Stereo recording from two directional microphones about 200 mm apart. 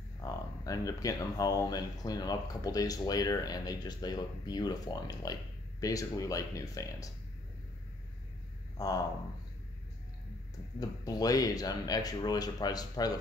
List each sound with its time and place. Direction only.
0.2 s speech: 15° left (ahead or behind)
8.7 s speech: 20° left (ahead or behind)
10.8 s speech: 20° left (ahead or behind)